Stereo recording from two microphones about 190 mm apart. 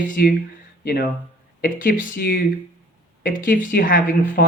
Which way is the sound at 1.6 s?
45° left (ahead or behind).